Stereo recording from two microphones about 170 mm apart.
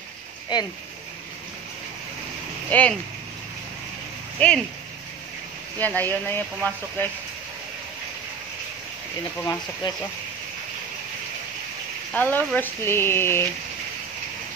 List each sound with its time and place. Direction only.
0.5 s speech: 25° left (ahead or behind)
2.7 s speech: 10° left (ahead or behind)
4.4 s speech: 5° left (ahead or behind)
5.8 s speech: 10° left (ahead or behind)
9.4 s speech: 20° left (ahead or behind)
12.1 s speech: 10° left (ahead or behind)